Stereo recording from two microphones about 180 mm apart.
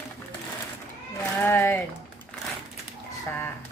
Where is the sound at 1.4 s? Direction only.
10° left (ahead or behind).